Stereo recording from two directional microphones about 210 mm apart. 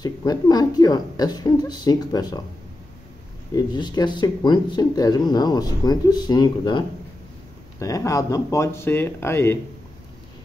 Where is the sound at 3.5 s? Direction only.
20° left (ahead or behind).